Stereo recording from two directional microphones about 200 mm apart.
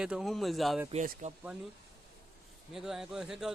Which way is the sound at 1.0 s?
40° right (ahead or behind).